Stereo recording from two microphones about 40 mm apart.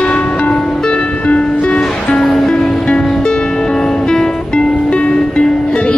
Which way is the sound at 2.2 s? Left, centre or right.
Centre.